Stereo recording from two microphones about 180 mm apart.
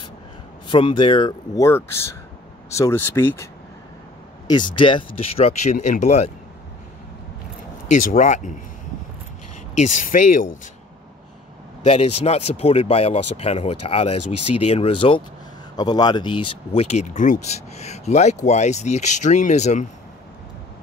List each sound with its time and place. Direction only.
0.7 s speech: 25° left (ahead or behind)
4.5 s speech: 25° left (ahead or behind)
7.9 s speech: 45° left (ahead or behind)
9.8 s speech: 45° left (ahead or behind)
11.8 s speech: 35° left (ahead or behind)